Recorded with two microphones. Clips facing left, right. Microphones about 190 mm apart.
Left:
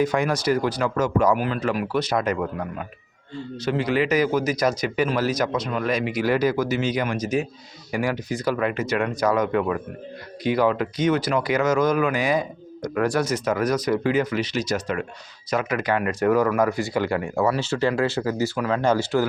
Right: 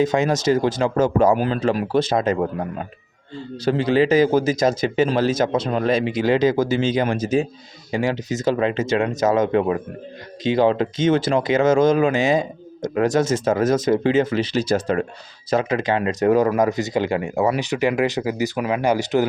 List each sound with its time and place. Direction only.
0.0 s speech: 25° right (ahead or behind)